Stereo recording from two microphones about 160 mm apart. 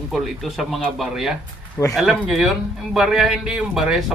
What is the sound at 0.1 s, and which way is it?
Speech, centre (ahead or behind).